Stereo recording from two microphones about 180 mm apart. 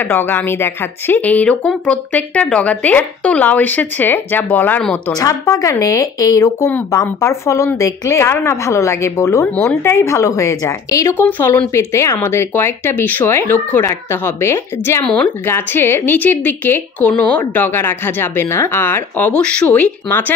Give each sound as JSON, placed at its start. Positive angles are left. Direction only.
{"t": 0.0, "sound": "speech", "side_deg": 10}
{"t": 5.1, "sound": "speech", "side_deg": 20}